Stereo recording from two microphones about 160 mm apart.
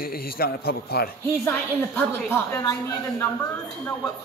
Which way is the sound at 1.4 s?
15° left (ahead or behind).